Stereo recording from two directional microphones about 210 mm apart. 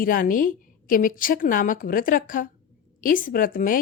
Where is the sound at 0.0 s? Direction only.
40° left (ahead or behind).